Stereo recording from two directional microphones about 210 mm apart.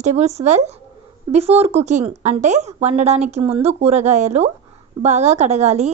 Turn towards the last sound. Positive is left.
turn(degrees=-30)  # may be behind; listen again after turning